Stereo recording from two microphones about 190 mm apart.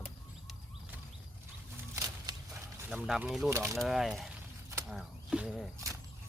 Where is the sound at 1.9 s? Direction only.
15° right (ahead or behind).